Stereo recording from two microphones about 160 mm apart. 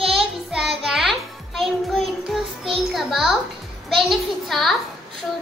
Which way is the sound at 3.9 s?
Centre (ahead or behind).